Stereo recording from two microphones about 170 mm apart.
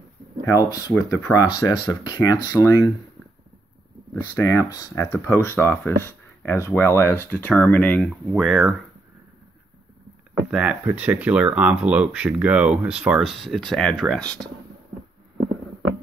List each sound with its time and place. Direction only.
0.7 s speech: 20° left (ahead or behind)
4.1 s speech: 15° left (ahead or behind); by 8.7 s centre (ahead or behind)
10.5 s speech: 5° right (ahead or behind)